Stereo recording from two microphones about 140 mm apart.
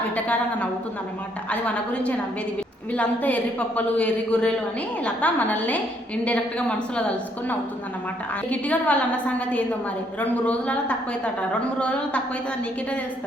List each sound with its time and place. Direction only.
1.5 s a woman's voice: 10° left (ahead or behind)
8.4 s a woman's voice: 10° left (ahead or behind)